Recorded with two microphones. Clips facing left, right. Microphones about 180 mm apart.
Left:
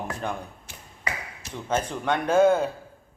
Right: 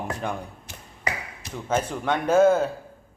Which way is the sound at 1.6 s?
10° right (ahead or behind).